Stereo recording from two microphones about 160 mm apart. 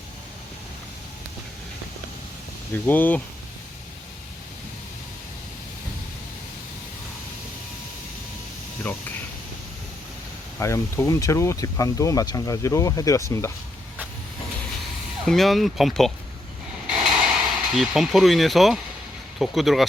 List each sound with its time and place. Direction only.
2.7 s speech: 10° left (ahead or behind)
8.8 s a sound: 10° left (ahead or behind)
10.6 s speech: 20° left (ahead or behind)
15.2 s speech: centre (ahead or behind)
16.8 s a sound: 5° right (ahead or behind)
17.7 s speech: centre (ahead or behind)